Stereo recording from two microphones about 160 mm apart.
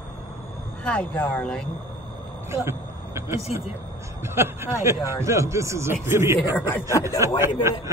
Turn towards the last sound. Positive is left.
turn(degrees=-20)  # may be behind; listen again after turning